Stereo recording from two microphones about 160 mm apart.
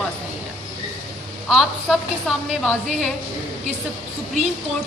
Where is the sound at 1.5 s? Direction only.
Centre (ahead or behind).